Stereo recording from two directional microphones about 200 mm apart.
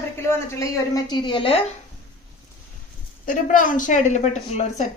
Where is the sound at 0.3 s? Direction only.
15° left (ahead or behind).